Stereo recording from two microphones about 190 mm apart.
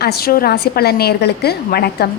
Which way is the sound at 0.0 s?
55° left (ahead or behind).